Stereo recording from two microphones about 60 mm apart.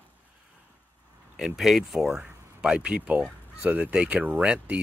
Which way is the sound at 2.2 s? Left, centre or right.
Centre.